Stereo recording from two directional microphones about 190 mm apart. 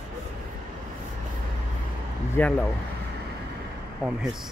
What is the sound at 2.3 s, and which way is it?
Speech, 10° left (ahead or behind).